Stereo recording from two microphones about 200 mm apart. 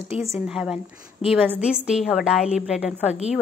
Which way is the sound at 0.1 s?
30° left (ahead or behind).